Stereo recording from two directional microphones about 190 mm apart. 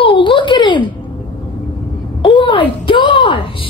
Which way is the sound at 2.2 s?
25° left (ahead or behind).